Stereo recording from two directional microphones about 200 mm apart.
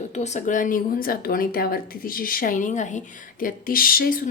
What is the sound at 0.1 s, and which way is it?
Speech, 35° left (ahead or behind).